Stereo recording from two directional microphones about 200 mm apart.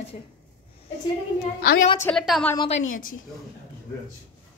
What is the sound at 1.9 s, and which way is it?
Speech, 10° left (ahead or behind).